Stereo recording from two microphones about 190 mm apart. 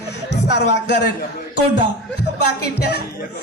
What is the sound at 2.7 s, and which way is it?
Music, 60° left (ahead or behind).